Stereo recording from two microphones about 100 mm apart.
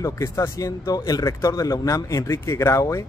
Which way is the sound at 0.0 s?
35° left (ahead or behind).